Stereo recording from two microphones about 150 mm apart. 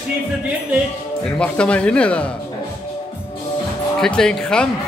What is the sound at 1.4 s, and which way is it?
Speech, 5° left (ahead or behind).